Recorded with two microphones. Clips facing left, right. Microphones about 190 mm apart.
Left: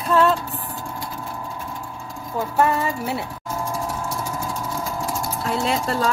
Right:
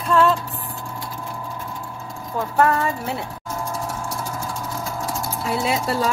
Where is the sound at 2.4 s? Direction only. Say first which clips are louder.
Right 1 dB; 10° left (ahead or behind).